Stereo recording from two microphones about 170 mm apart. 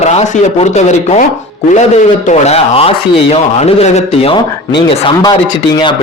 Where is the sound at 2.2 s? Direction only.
40° left (ahead or behind).